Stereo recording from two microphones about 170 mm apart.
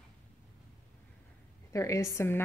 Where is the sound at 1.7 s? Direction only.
20° left (ahead or behind).